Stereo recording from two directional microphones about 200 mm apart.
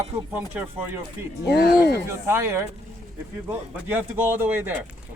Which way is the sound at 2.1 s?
15° right (ahead or behind).